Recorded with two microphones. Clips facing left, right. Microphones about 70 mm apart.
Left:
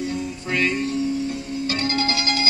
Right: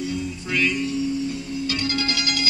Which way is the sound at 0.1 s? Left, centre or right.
Left.